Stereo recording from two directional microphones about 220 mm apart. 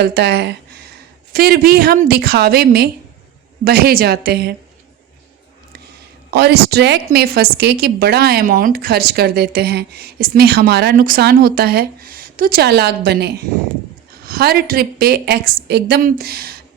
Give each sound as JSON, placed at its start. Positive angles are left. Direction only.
{"t": 0.0, "sound": "a woman's voice", "side_deg": -45}
{"t": 6.3, "sound": "a woman's voice", "side_deg": -45}